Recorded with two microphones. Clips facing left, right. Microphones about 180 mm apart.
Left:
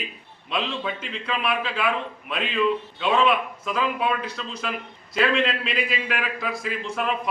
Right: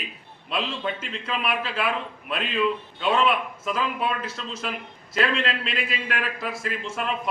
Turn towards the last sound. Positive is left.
turn(degrees=0)  # may be behind; listen again after turning